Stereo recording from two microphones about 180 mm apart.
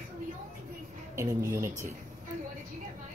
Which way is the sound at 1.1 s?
15° right (ahead or behind).